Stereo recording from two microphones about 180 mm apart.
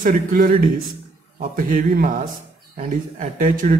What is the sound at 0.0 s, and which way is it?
Speech, 50° right (ahead or behind).